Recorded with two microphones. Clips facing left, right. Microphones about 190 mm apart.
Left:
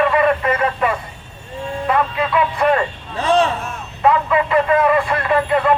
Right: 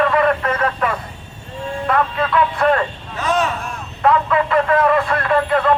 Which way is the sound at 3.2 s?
30° left (ahead or behind).